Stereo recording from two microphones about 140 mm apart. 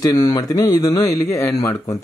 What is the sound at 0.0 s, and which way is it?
Speech, 30° left (ahead or behind).